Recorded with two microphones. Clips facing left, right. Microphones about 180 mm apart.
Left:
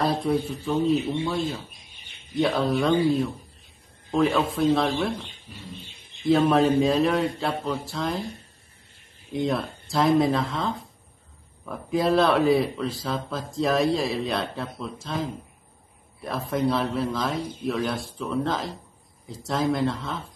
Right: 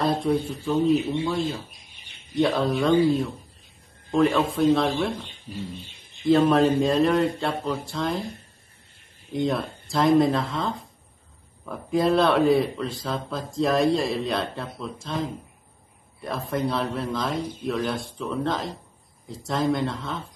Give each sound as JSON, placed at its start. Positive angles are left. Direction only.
{"t": 0.0, "sound": "speech", "side_deg": 5}
{"t": 6.2, "sound": "speech", "side_deg": 0}
{"t": 9.3, "sound": "speech", "side_deg": 0}